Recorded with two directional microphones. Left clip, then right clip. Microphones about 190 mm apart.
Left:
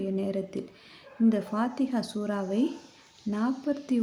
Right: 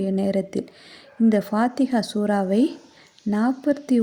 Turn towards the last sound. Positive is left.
turn(degrees=-35)  # may be behind; listen again after turning